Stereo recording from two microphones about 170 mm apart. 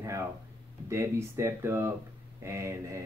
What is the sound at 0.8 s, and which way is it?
Speech, 15° right (ahead or behind).